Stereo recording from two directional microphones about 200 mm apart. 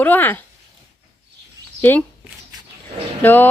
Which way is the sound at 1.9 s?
10° left (ahead or behind).